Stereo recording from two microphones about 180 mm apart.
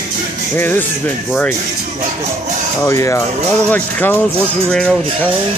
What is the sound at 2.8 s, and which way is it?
Speech, 15° left (ahead or behind).